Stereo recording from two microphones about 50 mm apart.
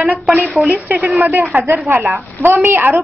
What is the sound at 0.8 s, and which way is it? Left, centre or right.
A woman's voice, right.